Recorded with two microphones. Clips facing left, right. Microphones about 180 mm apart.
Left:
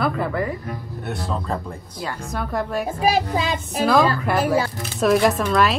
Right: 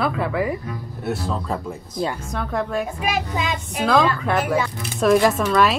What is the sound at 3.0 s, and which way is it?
Child singing, 35° left (ahead or behind).